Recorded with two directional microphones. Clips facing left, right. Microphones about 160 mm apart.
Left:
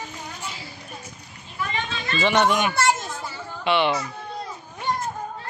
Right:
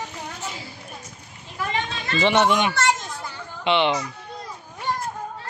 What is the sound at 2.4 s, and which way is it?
Speech, 25° right (ahead or behind).